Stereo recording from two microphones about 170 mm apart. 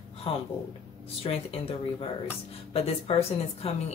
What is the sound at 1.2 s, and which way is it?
Speech, 35° left (ahead or behind).